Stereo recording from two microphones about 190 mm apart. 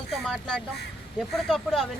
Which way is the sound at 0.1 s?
5° left (ahead or behind).